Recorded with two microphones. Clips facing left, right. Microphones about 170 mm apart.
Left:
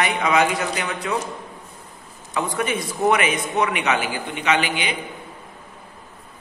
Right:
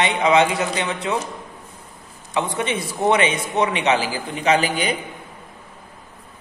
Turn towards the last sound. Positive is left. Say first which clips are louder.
# right 3 dB
turn(degrees=-40)  # may be behind; listen again after turning